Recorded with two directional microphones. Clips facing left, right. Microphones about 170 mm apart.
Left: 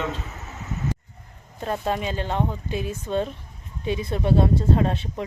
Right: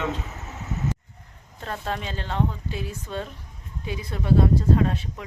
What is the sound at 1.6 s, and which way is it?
Speech, 15° left (ahead or behind).